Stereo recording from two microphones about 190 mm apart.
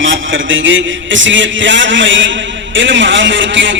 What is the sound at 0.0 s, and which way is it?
A man's voice, 90° right.